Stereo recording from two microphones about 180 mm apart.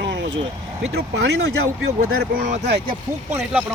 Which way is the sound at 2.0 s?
50° right (ahead or behind).